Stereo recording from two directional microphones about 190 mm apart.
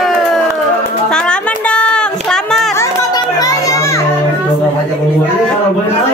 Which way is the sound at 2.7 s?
15° left (ahead or behind).